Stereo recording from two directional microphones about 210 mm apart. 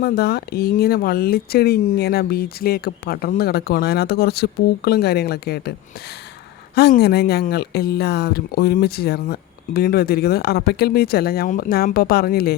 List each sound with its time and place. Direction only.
0.0 s speech: 50° left (ahead or behind)
6.7 s speech: 50° left (ahead or behind)